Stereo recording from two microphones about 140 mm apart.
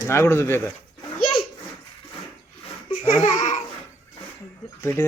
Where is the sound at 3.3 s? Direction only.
60° left (ahead or behind).